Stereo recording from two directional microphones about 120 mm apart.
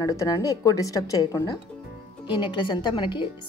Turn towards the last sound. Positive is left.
turn(degrees=40)  # may be behind; listen again after turning